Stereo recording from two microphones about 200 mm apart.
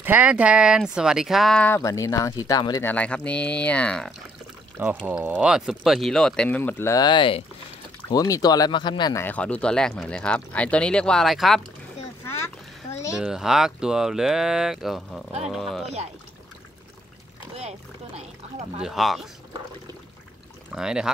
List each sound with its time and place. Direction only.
0.0 s speech: 10° right (ahead or behind)
1.8 s speech: 15° left (ahead or behind)
2.9 s speech: 5° left (ahead or behind)
5.0 s speech: 10° right (ahead or behind)
13.1 s speech: 5° right (ahead or behind)
17.6 s boat: 30° right (ahead or behind)
18.8 s speech: centre (ahead or behind)
20.7 s speech: 5° right (ahead or behind)